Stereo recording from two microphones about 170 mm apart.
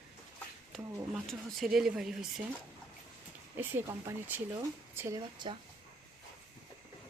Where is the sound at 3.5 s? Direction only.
10° right (ahead or behind).